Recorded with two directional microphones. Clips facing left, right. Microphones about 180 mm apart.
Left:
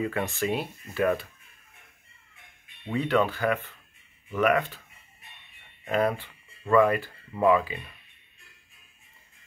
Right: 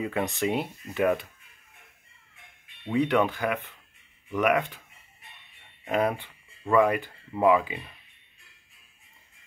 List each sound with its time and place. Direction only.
0.0 s speech: 15° right (ahead or behind)
2.8 s speech: 15° right (ahead or behind)
5.9 s speech: 15° right (ahead or behind)